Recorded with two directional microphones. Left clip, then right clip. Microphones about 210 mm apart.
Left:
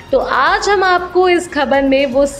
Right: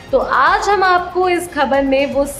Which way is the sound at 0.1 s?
15° left (ahead or behind).